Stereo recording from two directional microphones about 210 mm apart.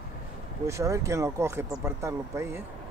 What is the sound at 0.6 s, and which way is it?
Speech, 15° right (ahead or behind).